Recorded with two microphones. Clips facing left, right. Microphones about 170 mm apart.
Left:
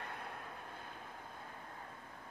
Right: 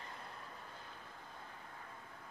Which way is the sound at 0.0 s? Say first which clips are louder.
Left 4 dB; 60° left (ahead or behind).